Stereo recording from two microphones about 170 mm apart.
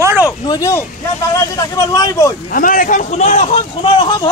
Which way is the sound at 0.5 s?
20° left (ahead or behind).